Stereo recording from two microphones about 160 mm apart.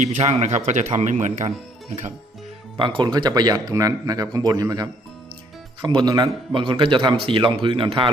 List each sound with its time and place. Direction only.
0.0 s speech: 45° right (ahead or behind)
2.7 s a man's voice: 30° right (ahead or behind)